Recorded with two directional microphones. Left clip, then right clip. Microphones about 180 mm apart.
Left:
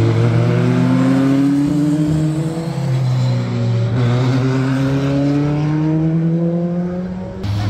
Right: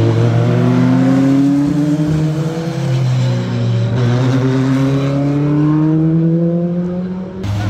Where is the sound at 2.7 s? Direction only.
Centre (ahead or behind).